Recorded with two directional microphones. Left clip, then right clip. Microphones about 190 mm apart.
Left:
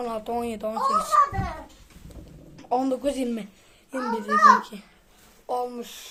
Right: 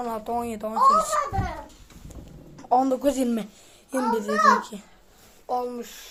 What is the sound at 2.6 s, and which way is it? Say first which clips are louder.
A woman's voice: right 4 dB; centre (ahead or behind).